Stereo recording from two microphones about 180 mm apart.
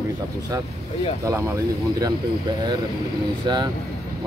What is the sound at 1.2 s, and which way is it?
Speech, 15° right (ahead or behind).